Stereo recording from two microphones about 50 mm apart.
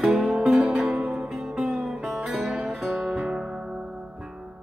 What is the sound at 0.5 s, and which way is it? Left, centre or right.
Music, right.